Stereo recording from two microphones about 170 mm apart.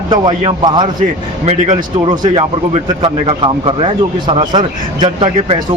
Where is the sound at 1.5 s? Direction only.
45° right (ahead or behind).